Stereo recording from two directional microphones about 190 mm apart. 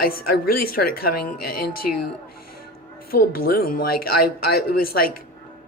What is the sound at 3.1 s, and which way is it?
Speech, 50° left (ahead or behind).